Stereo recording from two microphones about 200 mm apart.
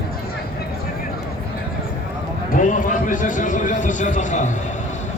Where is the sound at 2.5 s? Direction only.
40° left (ahead or behind).